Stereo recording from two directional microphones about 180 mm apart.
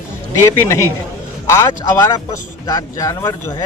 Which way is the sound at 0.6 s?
15° left (ahead or behind).